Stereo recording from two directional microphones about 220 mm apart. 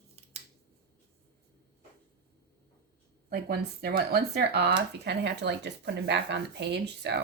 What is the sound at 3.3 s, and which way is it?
Speech, 45° right (ahead or behind).